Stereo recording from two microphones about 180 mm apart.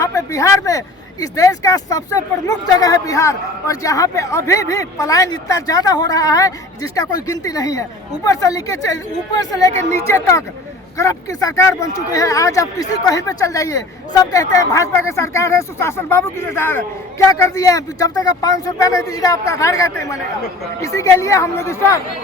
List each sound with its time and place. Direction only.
0.0 s speech: 15° left (ahead or behind)